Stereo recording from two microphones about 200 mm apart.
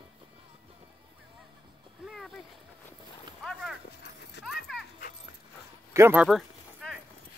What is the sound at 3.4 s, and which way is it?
Clip-clop, centre (ahead or behind).